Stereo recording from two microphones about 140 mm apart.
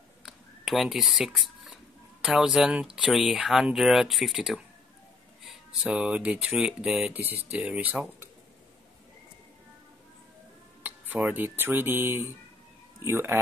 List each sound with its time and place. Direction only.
0.2 s a sound: centre (ahead or behind)
2.2 s speech: 5° right (ahead or behind)
7.2 s speech: 15° right (ahead or behind)
10.8 s speech: 10° right (ahead or behind)